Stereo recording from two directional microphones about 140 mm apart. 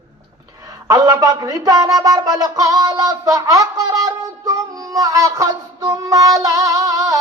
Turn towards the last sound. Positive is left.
turn(degrees=-25)  # may be behind; listen again after turning